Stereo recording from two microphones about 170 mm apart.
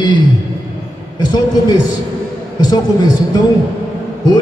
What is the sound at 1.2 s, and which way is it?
Speech, 25° left (ahead or behind).